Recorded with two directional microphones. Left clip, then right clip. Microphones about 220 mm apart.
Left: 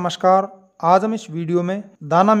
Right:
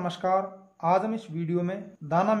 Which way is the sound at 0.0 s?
40° left (ahead or behind).